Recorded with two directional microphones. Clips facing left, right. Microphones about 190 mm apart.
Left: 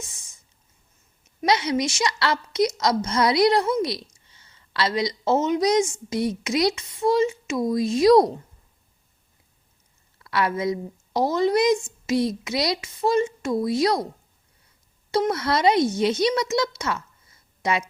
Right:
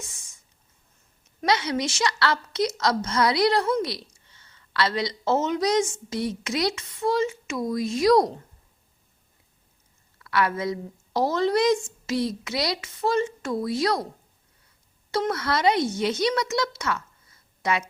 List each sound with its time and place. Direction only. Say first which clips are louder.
1.4 s a woman's voice: left 2 dB; 20° left (ahead or behind)
10.2 s a woman's voice: left 1 dB; 25° left (ahead or behind)
15.1 s a woman's voice: left 3 dB; 20° left (ahead or behind)